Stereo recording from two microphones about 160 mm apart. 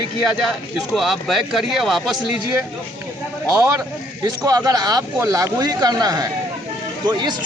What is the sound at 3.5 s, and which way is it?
A man's voice, 20° right (ahead or behind).